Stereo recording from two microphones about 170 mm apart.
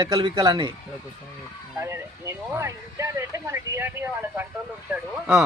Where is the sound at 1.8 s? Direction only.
15° right (ahead or behind).